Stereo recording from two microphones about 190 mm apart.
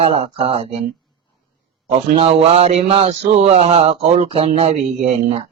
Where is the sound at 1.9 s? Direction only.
35° right (ahead or behind).